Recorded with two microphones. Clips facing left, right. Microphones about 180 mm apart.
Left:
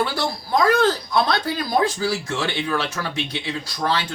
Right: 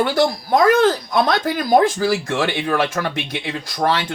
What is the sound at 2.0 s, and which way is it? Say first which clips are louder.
Speech: right 5 dB; 55° right (ahead or behind).